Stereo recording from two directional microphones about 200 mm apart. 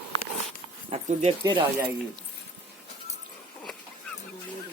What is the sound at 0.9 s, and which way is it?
Speech, 35° right (ahead or behind).